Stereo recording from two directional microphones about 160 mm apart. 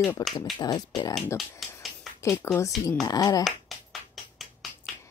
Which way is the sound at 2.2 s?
15° left (ahead or behind).